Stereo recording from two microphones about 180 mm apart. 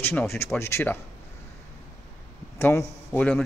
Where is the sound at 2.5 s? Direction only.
15° left (ahead or behind).